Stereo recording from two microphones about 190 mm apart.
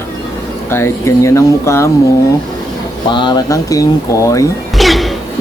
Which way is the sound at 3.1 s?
25° left (ahead or behind).